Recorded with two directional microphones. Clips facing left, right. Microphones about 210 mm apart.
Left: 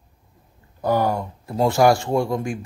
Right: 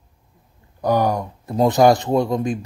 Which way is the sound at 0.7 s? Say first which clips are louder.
Right 2 dB; 20° right (ahead or behind).